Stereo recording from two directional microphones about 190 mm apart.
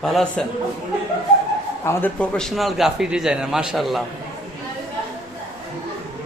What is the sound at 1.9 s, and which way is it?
A man's voice, 10° left (ahead or behind).